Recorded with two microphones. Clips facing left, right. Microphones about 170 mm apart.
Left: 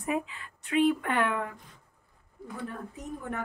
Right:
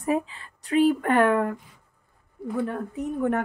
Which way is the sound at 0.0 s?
35° right (ahead or behind).